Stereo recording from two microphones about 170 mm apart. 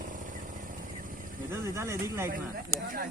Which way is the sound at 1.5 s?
15° right (ahead or behind).